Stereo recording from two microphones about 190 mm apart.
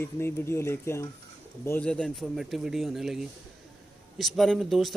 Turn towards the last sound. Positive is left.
turn(degrees=0)  # may be behind; listen again after turning